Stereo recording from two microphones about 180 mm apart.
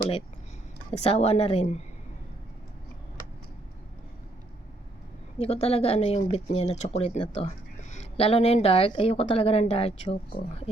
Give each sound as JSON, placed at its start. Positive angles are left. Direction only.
{"t": 0.9, "sound": "speech", "side_deg": 35}
{"t": 5.4, "sound": "speech", "side_deg": 35}